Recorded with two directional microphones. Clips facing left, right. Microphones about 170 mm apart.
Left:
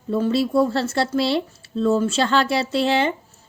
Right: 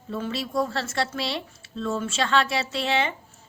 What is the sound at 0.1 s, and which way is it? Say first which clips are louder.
A woman's voice: left 9 dB; 35° left (ahead or behind).